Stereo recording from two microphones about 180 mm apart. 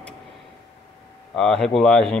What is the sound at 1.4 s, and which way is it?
Speech, centre (ahead or behind).